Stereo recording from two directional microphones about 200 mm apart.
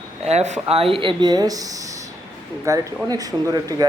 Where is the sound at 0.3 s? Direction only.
35° right (ahead or behind).